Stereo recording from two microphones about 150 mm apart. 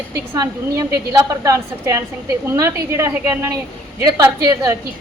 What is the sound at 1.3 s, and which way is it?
A woman's voice, 20° right (ahead or behind).